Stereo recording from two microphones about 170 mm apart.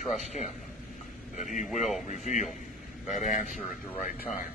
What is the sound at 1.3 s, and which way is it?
A man's voice, 45° left (ahead or behind).